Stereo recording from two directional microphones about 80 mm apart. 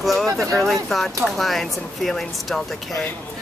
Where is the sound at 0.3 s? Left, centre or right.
Right.